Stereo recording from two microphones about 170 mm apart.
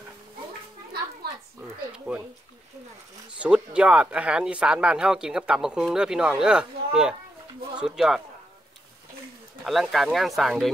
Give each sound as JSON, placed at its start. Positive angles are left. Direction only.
{"t": 1.2, "sound": "a sound", "side_deg": -70}
{"t": 2.1, "sound": "speech", "side_deg": -5}
{"t": 3.3, "sound": "speech", "side_deg": -5}
{"t": 9.7, "sound": "speech", "side_deg": 0}